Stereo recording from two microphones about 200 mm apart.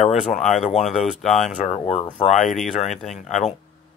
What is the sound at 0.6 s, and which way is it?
Speech, 30° left (ahead or behind).